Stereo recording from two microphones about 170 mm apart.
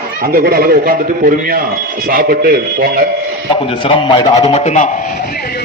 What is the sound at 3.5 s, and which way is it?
A man's voice, 30° left (ahead or behind).